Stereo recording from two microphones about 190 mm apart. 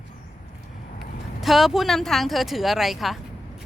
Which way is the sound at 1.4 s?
Centre (ahead or behind).